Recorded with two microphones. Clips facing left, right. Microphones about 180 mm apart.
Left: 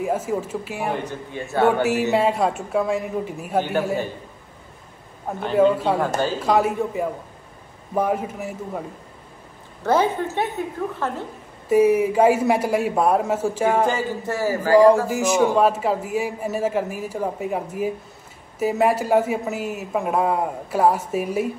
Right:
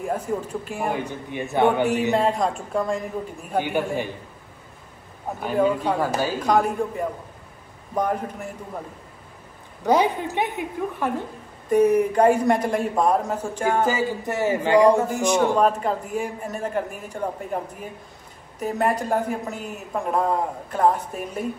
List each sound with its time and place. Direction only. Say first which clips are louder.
0.0 s a man's voice: left 3 dB; 5° left (ahead or behind)
0.9 s a woman's voice: even; 15° right (ahead or behind)
2.1 s a man's voice: left 2 dB; 5° left (ahead or behind)
5.4 s a woman's voice: left 4 dB; 5° right (ahead or behind)
9.8 s a woman's voice: even; 15° right (ahead or behind)
11.7 s a man's voice: left 1 dB; 5° left (ahead or behind)
14.2 s speech: left 1 dB; 20° right (ahead or behind)
15.0 s a man's voice: left 1 dB; 5° left (ahead or behind)